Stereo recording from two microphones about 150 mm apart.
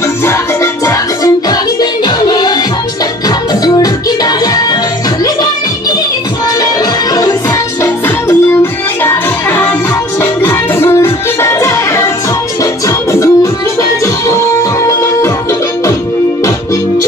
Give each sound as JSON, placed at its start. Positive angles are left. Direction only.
{"t": 1.8, "sound": "music", "side_deg": 25}
{"t": 3.6, "sound": "music", "side_deg": 25}
{"t": 5.2, "sound": "music", "side_deg": 25}
{"t": 9.0, "sound": "music", "side_deg": 15}